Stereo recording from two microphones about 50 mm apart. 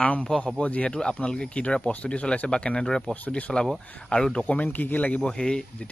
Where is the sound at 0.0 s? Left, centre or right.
Left.